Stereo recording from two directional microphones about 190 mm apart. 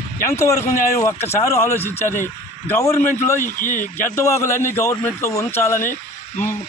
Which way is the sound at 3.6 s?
45° left (ahead or behind).